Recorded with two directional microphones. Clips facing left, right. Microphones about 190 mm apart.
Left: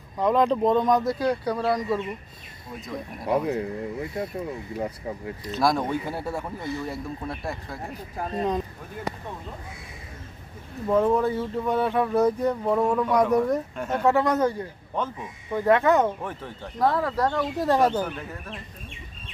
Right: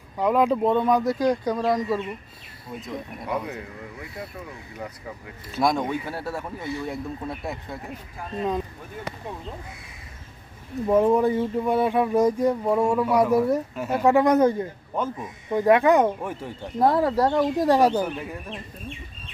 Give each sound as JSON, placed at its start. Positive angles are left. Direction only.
{"t": 0.2, "sound": "speech", "side_deg": -10}
{"t": 2.8, "sound": "speech", "side_deg": 0}
{"t": 3.2, "sound": "speech", "side_deg": 25}
{"t": 5.5, "sound": "speech", "side_deg": -10}
{"t": 5.9, "sound": "speech", "side_deg": 15}
{"t": 6.6, "sound": "speech", "side_deg": 0}
{"t": 7.9, "sound": "speech", "side_deg": 40}
{"t": 10.8, "sound": "speech", "side_deg": -15}
{"t": 16.7, "sound": "speech", "side_deg": -25}
{"t": 17.6, "sound": "speech", "side_deg": -10}